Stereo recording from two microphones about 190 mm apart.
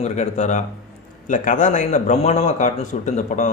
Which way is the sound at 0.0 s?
40° left (ahead or behind).